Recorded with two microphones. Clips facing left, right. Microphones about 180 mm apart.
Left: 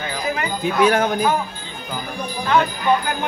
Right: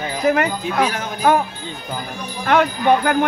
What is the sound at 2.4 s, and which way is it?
Speech, 60° right (ahead or behind).